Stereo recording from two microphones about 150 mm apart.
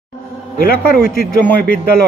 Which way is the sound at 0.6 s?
85° left.